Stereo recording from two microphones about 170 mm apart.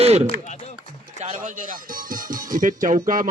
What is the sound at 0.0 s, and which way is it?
Speech, 40° right (ahead or behind).